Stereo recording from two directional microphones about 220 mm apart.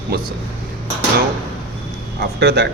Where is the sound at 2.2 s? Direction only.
50° right (ahead or behind).